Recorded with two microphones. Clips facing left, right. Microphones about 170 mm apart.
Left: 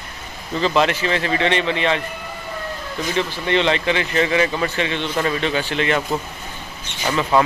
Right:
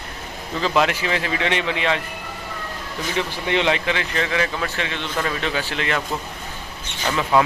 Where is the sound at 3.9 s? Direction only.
5° left (ahead or behind).